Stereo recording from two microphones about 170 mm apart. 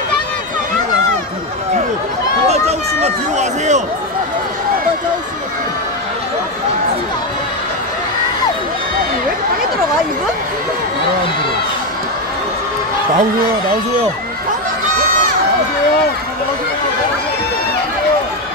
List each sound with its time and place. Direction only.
2.4 s run: 40° right (ahead or behind)